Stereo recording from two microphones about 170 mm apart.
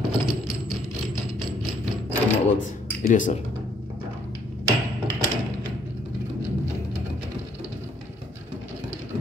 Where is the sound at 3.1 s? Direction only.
50° left (ahead or behind).